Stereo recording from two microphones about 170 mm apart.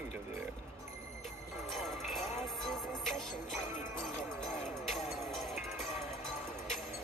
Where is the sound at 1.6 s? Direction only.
Centre (ahead or behind).